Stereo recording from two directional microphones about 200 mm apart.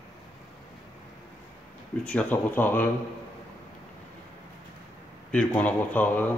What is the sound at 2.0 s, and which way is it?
Speech, 5° left (ahead or behind).